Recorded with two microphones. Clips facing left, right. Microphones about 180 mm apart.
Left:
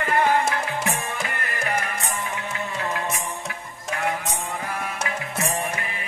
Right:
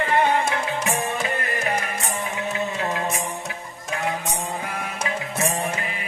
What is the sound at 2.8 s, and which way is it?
Music, 20° right (ahead or behind).